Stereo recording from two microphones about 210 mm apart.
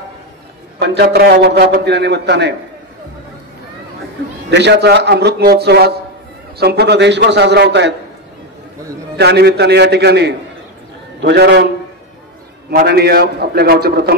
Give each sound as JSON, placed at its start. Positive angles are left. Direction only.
{"t": 0.7, "sound": "a man's voice", "side_deg": -50}
{"t": 4.5, "sound": "a man's voice", "side_deg": -55}
{"t": 9.1, "sound": "a man's voice", "side_deg": -55}
{"t": 12.7, "sound": "a man's voice", "side_deg": -50}